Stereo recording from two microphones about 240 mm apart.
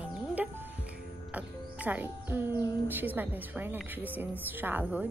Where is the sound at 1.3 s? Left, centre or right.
Centre.